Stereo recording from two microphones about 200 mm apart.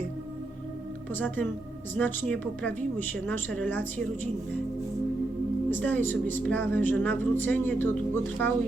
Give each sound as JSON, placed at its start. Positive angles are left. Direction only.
{"t": 1.1, "sound": "speech", "side_deg": 10}
{"t": 5.7, "sound": "speech", "side_deg": 10}